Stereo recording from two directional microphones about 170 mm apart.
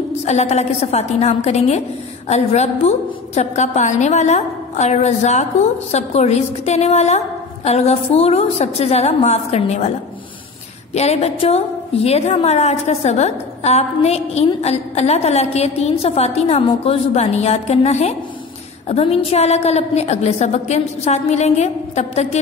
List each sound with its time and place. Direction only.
0.2 s a woman's voice: 40° left (ahead or behind)